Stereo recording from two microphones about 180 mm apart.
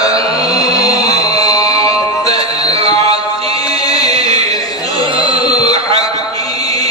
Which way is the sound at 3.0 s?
30° right (ahead or behind).